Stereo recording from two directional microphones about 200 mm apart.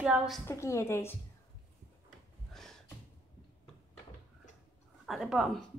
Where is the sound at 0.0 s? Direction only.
5° right (ahead or behind).